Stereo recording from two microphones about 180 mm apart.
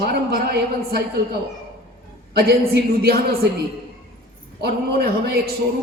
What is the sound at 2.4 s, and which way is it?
A woman's voice, 60° right (ahead or behind).